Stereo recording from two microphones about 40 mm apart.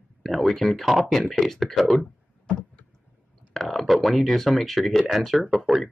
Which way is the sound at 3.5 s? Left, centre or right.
Centre.